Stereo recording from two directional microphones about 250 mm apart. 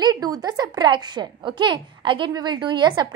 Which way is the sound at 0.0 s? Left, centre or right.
Centre.